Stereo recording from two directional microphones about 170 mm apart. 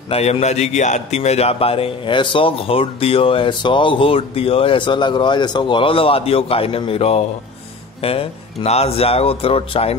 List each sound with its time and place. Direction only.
0.1 s a man's voice: 40° left (ahead or behind)